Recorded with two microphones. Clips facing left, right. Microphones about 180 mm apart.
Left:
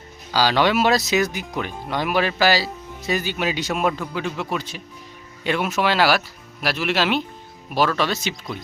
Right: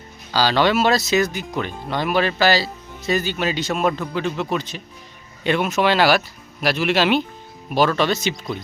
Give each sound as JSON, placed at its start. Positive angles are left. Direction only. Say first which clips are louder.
{"t": 0.3, "sound": "speech", "louder": "right 1 dB", "side_deg": 10}